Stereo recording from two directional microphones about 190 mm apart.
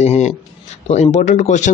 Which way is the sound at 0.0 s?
35° left (ahead or behind).